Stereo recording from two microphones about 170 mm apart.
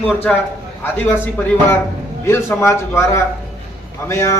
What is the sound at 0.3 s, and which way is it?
A man's voice, 5° left (ahead or behind).